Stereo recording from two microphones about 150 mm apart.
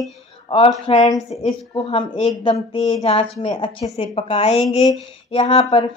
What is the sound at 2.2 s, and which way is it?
A woman's voice, 40° left (ahead or behind).